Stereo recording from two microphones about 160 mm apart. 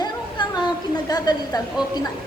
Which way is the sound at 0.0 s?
25° left (ahead or behind).